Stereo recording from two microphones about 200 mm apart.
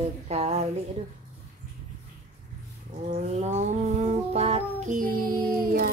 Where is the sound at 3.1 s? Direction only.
35° right (ahead or behind).